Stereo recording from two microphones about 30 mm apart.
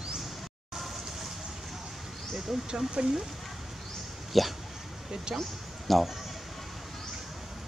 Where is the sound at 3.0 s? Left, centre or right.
Right.